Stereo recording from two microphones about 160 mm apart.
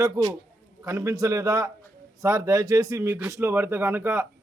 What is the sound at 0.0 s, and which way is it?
A man's voice, 25° right (ahead or behind).